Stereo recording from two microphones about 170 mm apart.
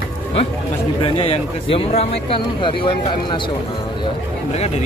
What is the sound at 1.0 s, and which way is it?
Speech, 35° left (ahead or behind).